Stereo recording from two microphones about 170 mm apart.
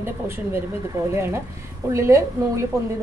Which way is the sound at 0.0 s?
15° right (ahead or behind).